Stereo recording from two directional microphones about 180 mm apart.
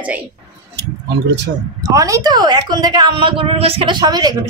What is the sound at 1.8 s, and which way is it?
A man's voice, 20° right (ahead or behind).